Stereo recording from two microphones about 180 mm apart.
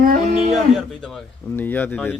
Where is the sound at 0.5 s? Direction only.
Centre (ahead or behind).